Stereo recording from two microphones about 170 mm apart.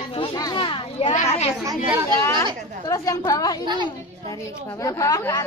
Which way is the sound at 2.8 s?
20° left (ahead or behind).